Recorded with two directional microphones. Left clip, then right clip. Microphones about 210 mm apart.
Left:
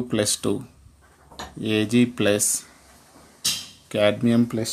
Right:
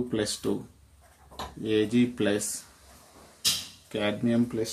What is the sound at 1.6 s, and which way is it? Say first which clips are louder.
Speech: left 4 dB; 45° left (ahead or behind).